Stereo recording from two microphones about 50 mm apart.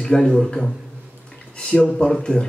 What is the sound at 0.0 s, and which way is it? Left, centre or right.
Speech, centre.